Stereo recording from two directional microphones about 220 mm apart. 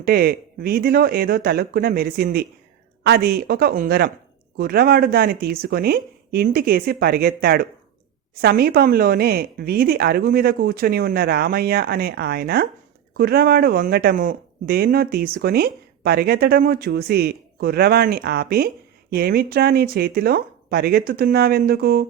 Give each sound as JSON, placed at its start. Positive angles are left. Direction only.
{"t": 0.0, "sound": "speech", "side_deg": -45}